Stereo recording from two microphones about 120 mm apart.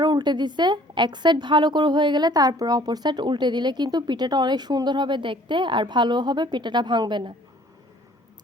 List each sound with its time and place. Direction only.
0.0 s a woman's voice: 35° right (ahead or behind)